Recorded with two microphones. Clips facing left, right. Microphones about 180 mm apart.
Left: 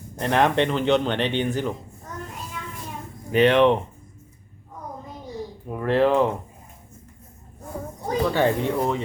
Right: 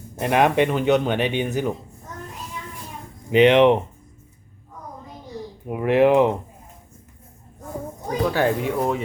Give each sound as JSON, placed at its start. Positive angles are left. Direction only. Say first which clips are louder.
{"t": 0.2, "sound": "speech", "louder": "right 2 dB", "side_deg": -10}
{"t": 3.3, "sound": "speech", "louder": "right 3 dB", "side_deg": -15}
{"t": 5.6, "sound": "speech", "louder": "right 3 dB", "side_deg": -15}
{"t": 8.3, "sound": "speech", "louder": "even", "side_deg": -5}